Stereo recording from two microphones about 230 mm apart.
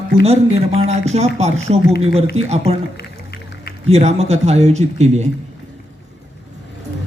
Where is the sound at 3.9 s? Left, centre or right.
Right.